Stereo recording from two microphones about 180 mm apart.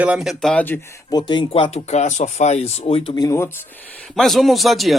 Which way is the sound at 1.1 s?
25° left (ahead or behind).